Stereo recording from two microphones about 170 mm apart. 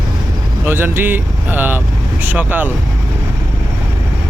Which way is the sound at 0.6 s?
10° right (ahead or behind).